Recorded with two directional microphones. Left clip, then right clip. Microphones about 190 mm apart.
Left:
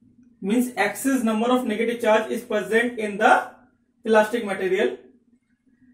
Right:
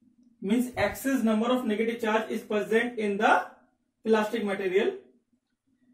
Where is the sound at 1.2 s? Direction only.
15° right (ahead or behind).